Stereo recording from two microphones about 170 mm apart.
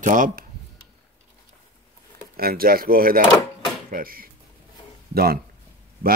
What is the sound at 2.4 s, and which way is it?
Speech, 60° right (ahead or behind).